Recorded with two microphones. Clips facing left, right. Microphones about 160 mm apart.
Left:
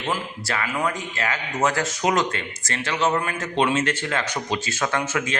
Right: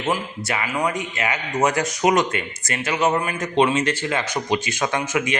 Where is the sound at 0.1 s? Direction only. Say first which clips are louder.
Right 3 dB; 15° right (ahead or behind).